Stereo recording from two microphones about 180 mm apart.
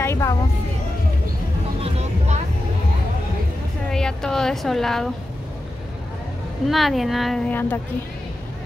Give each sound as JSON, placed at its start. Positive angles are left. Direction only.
{"t": 0.0, "sound": "a sound", "side_deg": 15}
{"t": 1.8, "sound": "vehicle", "side_deg": -35}
{"t": 3.9, "sound": "a woman's voice", "side_deg": 5}
{"t": 6.7, "sound": "speech", "side_deg": 0}